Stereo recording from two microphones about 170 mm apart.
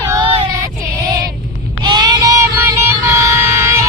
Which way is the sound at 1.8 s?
25° right (ahead or behind).